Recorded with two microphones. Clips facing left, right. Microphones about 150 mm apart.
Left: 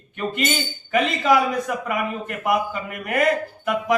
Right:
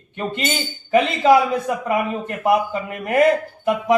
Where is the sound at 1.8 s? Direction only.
30° right (ahead or behind).